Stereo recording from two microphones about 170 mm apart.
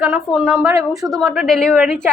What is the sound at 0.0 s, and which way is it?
Speech, 5° right (ahead or behind).